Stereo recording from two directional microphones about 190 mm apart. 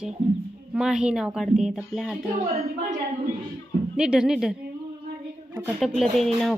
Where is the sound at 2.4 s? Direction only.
35° right (ahead or behind).